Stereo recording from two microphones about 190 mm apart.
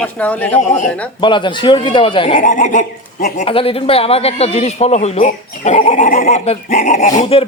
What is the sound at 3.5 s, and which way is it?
Speech, 30° left (ahead or behind).